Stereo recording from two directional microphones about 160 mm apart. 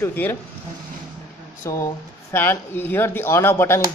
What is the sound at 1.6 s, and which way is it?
Speech, 20° left (ahead or behind).